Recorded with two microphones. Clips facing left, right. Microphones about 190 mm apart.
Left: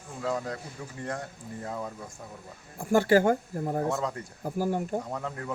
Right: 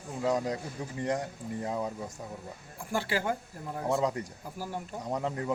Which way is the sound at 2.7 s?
45° left (ahead or behind).